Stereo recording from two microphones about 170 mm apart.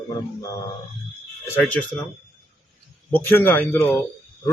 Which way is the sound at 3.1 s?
10° left (ahead or behind).